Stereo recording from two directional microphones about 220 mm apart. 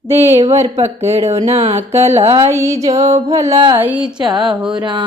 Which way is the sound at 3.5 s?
20° right (ahead or behind).